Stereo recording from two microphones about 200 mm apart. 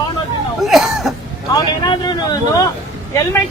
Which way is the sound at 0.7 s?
Centre (ahead or behind).